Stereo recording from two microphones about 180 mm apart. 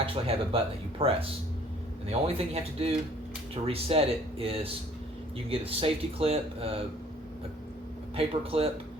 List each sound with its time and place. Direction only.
0.0 s speech: 30° right (ahead or behind)
8.1 s speech: 30° right (ahead or behind)